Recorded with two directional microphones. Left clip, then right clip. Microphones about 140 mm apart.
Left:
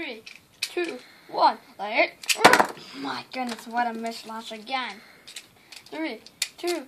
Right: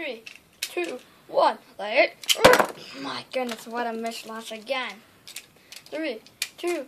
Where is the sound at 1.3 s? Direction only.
50° right (ahead or behind).